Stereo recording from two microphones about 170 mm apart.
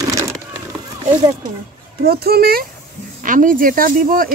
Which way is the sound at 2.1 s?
65° right (ahead or behind).